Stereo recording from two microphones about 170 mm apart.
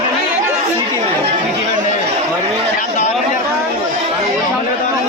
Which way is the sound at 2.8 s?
45° left (ahead or behind).